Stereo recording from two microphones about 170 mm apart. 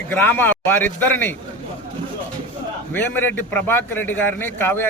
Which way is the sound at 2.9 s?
10° left (ahead or behind).